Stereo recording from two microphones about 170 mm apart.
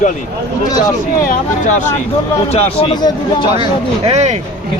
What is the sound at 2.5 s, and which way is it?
Speech, 35° left (ahead or behind).